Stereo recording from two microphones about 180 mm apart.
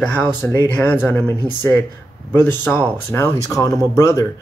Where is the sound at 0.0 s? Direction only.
10° left (ahead or behind).